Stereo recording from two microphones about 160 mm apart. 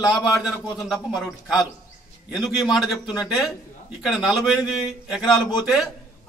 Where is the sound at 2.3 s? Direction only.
Centre (ahead or behind).